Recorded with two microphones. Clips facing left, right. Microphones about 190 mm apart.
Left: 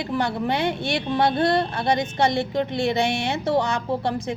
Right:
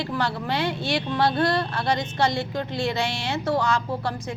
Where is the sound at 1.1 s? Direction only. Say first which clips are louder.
Left 3 dB; 20° left (ahead or behind).